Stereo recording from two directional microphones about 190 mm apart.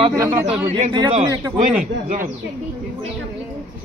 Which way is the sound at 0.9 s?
25° right (ahead or behind).